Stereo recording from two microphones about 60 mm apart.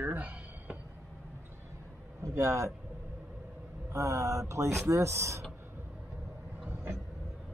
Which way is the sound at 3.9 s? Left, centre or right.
Right.